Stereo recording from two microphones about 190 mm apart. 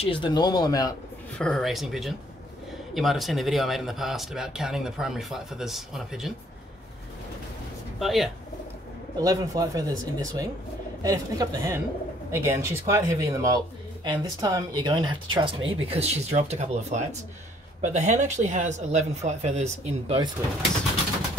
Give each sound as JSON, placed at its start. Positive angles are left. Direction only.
{"t": 0.0, "sound": "speech", "side_deg": 25}
{"t": 1.4, "sound": "speech", "side_deg": 0}
{"t": 8.0, "sound": "speech", "side_deg": 0}
{"t": 9.2, "sound": "speech", "side_deg": -20}